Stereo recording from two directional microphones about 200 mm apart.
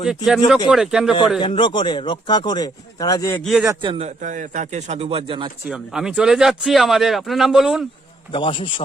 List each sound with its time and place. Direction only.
0.3 s speech: centre (ahead or behind)
1.4 s speech: 25° left (ahead or behind)
3.6 s a man's voice: 20° right (ahead or behind)
4.2 s speech: 40° right (ahead or behind)
5.6 s speech: 5° right (ahead or behind)
8.3 s speech: 25° left (ahead or behind)